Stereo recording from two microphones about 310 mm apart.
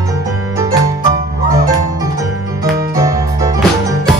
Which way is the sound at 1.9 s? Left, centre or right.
Centre.